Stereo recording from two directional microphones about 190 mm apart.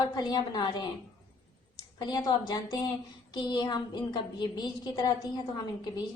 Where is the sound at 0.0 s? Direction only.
20° left (ahead or behind).